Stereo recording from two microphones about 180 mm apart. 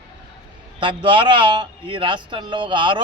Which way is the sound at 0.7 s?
25° right (ahead or behind).